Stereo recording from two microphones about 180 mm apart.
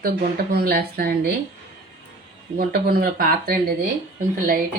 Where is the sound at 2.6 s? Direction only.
60° right (ahead or behind).